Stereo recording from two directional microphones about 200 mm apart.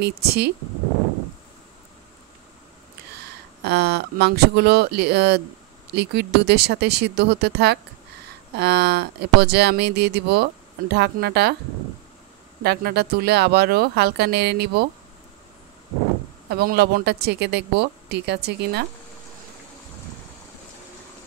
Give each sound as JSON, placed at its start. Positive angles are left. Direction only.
{"t": 0.0, "sound": "speech", "side_deg": -55}
{"t": 3.6, "sound": "speech", "side_deg": -55}
{"t": 12.6, "sound": "speech", "side_deg": -55}
{"t": 16.4, "sound": "speech", "side_deg": -55}